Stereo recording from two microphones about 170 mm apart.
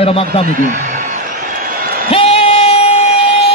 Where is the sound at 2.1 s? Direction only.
35° left (ahead or behind).